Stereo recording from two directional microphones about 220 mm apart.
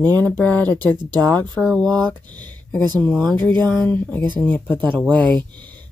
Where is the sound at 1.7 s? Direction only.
20° right (ahead or behind).